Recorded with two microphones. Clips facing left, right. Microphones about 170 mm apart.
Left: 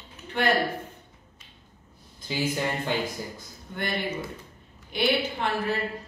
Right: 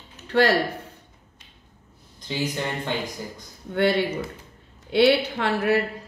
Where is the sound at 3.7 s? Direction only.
70° right (ahead or behind).